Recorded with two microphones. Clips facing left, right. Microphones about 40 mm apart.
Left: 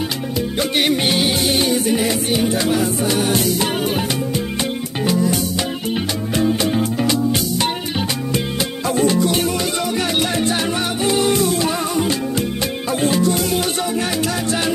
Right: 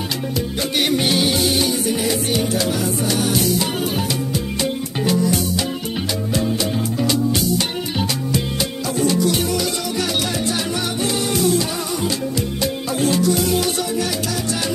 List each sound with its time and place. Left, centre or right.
0.7 s music: centre
1.5 s music: left
1.9 s music: left
5.0 s music: centre
6.6 s music: left
8.9 s music: left
11.1 s music: centre